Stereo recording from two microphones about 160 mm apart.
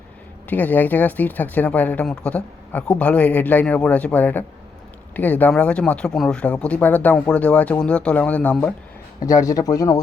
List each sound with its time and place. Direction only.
0.5 s speech: 10° left (ahead or behind)
9.2 s speech: 20° left (ahead or behind)